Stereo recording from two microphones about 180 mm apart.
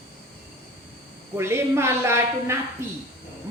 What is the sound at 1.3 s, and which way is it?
Speech, 15° right (ahead or behind).